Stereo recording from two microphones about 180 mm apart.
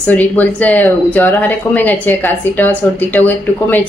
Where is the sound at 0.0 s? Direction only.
10° left (ahead or behind).